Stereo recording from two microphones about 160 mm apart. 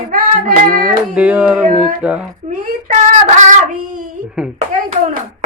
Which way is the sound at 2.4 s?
50° right (ahead or behind).